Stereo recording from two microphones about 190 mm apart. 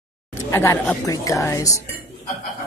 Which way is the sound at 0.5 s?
15° left (ahead or behind).